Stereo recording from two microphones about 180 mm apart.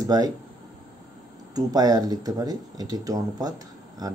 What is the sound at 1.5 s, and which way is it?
Speech, 20° right (ahead or behind).